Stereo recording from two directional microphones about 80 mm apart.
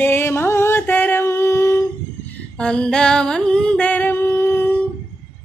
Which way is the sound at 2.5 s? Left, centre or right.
Centre.